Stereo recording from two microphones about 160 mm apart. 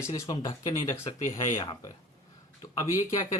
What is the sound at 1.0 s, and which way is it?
Speech, 45° left (ahead or behind).